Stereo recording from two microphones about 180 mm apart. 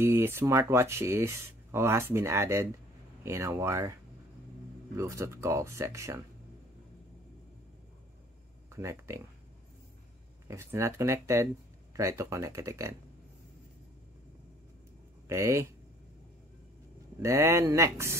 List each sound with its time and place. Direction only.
0.0 s speech: 15° right (ahead or behind)
8.6 s speech: 15° right (ahead or behind)
10.5 s speech: 15° right (ahead or behind)
15.2 s speech: 15° right (ahead or behind)
17.2 s speech: 15° right (ahead or behind)